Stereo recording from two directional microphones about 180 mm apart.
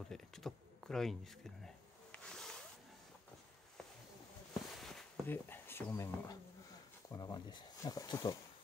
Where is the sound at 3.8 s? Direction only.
5° left (ahead or behind).